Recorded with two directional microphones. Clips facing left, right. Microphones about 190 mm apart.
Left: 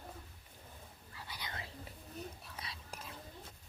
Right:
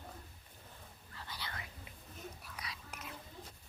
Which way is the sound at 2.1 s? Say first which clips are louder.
Left 2 dB; 30° left (ahead or behind).